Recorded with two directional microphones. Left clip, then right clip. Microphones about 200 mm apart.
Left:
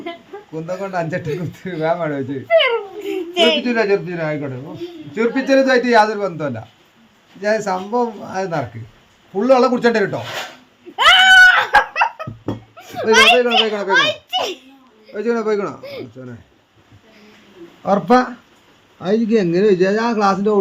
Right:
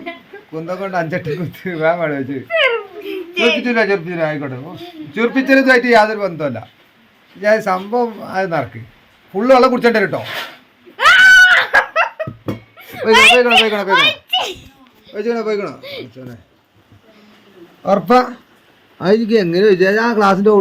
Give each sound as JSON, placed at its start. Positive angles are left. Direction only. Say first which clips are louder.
{"t": 0.5, "sound": "a man's voice", "louder": "right 3 dB", "side_deg": -5}
{"t": 3.3, "sound": "speech", "louder": "even", "side_deg": 45}
{"t": 3.6, "sound": "a man's voice", "louder": "right 2 dB", "side_deg": -5}
{"t": 10.9, "sound": "cat", "louder": "right 2 dB", "side_deg": 50}
{"t": 11.4, "sound": "laughter", "louder": "right 1 dB", "side_deg": 35}
{"t": 12.9, "sound": "a sound", "louder": "right 2 dB", "side_deg": 35}
{"t": 13.3, "sound": "a man's voice", "louder": "right 4 dB", "side_deg": -5}
{"t": 13.9, "sound": "giggle", "louder": "right 2 dB", "side_deg": 25}
{"t": 15.1, "sound": "a man's voice", "louder": "even", "side_deg": 5}
{"t": 17.8, "sound": "a man's voice", "louder": "right 2 dB", "side_deg": -5}
{"t": 18.9, "sound": "a man's voice", "louder": "right 4 dB", "side_deg": -45}